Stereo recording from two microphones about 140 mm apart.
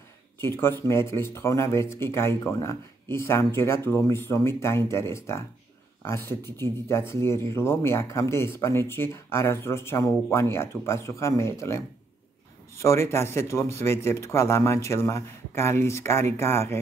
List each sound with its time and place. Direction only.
0.4 s speech: 15° left (ahead or behind)